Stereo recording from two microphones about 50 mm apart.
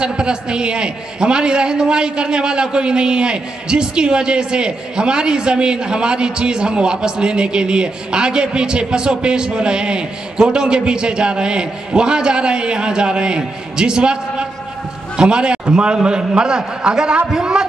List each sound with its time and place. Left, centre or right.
0.0 s a man's voice: centre